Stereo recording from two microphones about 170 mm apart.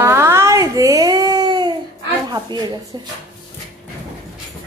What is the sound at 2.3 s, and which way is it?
Speech, 25° right (ahead or behind).